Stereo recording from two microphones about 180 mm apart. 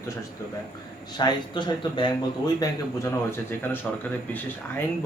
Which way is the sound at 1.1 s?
25° left (ahead or behind).